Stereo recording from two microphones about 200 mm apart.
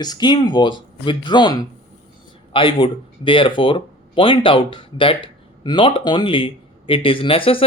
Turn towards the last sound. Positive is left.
turn(degrees=25)  # may be behind; listen again after turning